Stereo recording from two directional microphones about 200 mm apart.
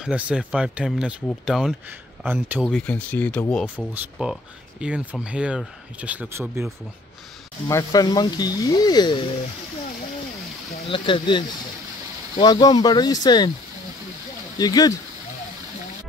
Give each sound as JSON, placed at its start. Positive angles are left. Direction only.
{"t": 0.0, "sound": "speech", "side_deg": -5}
{"t": 3.7, "sound": "speech", "side_deg": -5}
{"t": 7.6, "sound": "speech", "side_deg": 15}
{"t": 10.9, "sound": "speech", "side_deg": 25}
{"t": 14.6, "sound": "speech", "side_deg": 20}